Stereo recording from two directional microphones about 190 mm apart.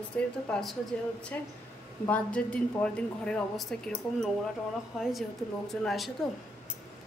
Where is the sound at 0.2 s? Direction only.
10° left (ahead or behind).